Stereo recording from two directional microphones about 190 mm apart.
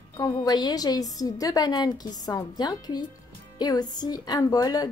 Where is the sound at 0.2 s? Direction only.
20° left (ahead or behind).